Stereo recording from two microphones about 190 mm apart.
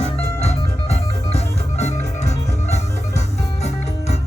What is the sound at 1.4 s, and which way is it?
Music, 35° left (ahead or behind).